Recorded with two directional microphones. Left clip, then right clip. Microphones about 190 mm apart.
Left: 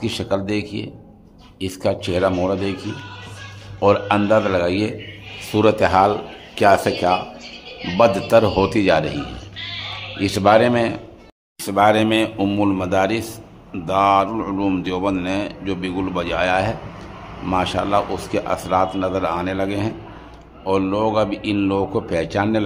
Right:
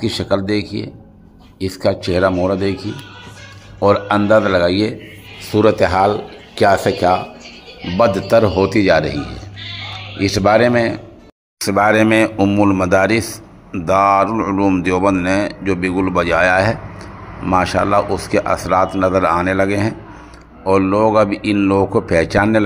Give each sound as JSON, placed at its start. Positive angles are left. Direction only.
{"t": 0.2, "sound": "speech", "side_deg": -20}
{"t": 1.7, "sound": "speech", "side_deg": -20}
{"t": 3.8, "sound": "speech", "side_deg": -20}
{"t": 10.2, "sound": "speech", "side_deg": -15}
{"t": 12.4, "sound": "speech", "side_deg": -10}